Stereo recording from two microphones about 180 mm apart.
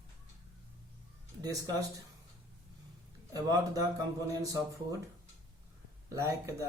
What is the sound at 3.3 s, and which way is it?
A man's voice, 20° right (ahead or behind).